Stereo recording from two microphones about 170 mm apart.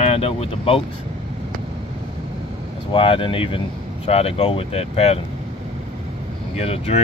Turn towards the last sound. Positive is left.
turn(degrees=35)  # may be behind; listen again after turning